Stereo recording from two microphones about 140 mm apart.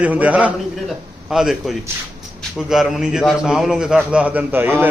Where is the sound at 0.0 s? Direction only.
10° right (ahead or behind).